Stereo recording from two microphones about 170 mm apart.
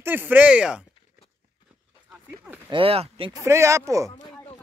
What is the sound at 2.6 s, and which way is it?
Speech, 30° right (ahead or behind).